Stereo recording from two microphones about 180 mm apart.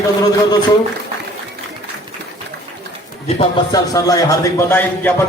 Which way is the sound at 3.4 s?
20° left (ahead or behind).